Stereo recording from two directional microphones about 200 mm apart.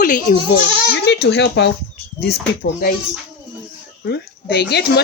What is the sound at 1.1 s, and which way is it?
Speech, 55° left (ahead or behind).